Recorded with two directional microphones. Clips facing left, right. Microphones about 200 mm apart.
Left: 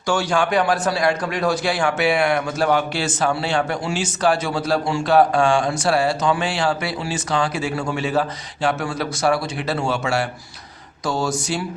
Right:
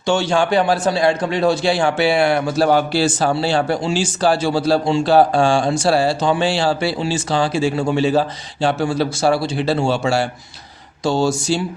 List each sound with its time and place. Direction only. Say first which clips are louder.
0.1 s a man's voice: right 3 dB; 25° right (ahead or behind)